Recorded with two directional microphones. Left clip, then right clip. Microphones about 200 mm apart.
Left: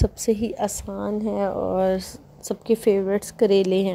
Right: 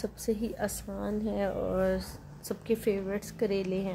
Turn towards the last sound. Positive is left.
turn(degrees=40)  # may be behind; listen again after turning